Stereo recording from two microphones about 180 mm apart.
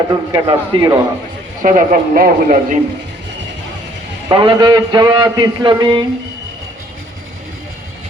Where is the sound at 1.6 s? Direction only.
45° right (ahead or behind).